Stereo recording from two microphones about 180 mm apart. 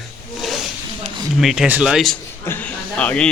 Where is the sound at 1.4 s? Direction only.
Centre (ahead or behind).